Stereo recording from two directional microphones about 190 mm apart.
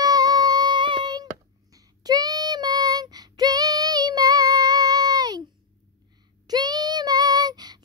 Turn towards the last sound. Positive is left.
turn(degrees=-20)  # may be behind; listen again after turning